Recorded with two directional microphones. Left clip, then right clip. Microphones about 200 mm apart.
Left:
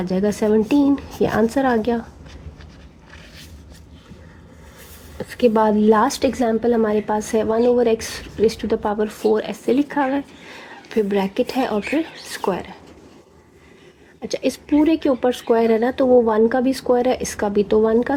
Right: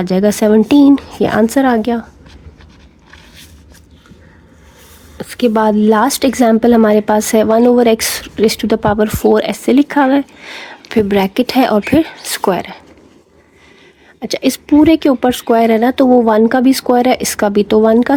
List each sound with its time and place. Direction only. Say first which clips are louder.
0.0 s a woman's voice: right 8 dB; 45° right (ahead or behind)
5.1 s a woman's voice: right 3 dB; 40° right (ahead or behind)
14.2 s a woman's voice: right 6 dB; 45° right (ahead or behind)